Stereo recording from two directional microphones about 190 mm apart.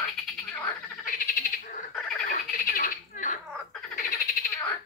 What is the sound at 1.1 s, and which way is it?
Frog, 50° left (ahead or behind).